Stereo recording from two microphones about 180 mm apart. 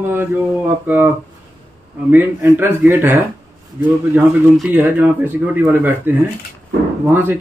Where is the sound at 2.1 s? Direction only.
10° right (ahead or behind).